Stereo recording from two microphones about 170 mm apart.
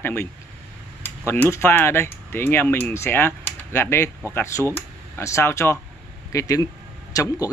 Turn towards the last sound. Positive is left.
turn(degrees=20)  # may be behind; listen again after turning